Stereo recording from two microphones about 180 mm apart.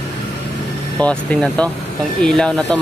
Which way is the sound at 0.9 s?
5° left (ahead or behind).